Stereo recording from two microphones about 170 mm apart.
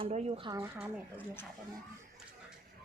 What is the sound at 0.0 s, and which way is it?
Speech, 30° right (ahead or behind).